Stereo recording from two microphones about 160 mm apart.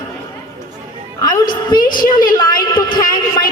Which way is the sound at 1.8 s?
60° left (ahead or behind).